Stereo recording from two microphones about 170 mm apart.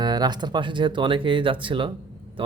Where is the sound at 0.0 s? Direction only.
25° right (ahead or behind).